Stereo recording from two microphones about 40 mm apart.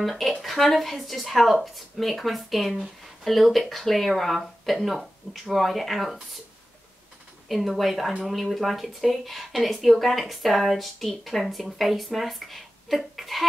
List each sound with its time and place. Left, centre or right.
0.0 s speech: centre
7.4 s speech: centre